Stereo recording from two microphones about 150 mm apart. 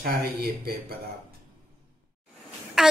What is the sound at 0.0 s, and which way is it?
Speech, 90° right.